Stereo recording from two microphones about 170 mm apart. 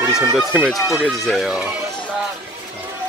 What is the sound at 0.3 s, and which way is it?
Speech, centre (ahead or behind).